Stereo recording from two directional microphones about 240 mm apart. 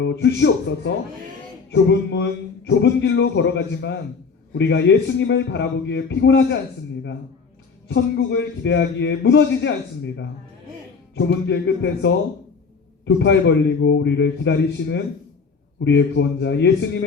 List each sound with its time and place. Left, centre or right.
0.0 s a man's voice: left
1.7 s a man's voice: left
7.9 s a man's voice: left